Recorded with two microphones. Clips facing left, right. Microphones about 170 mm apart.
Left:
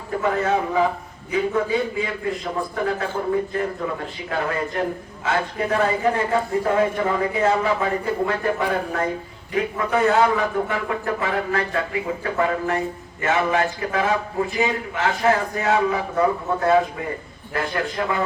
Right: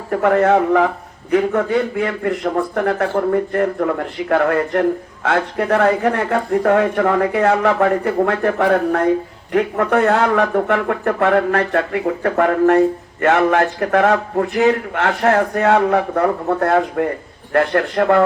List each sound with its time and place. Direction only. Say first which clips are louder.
0.1 s a man's voice: right 8 dB; 65° right (ahead or behind)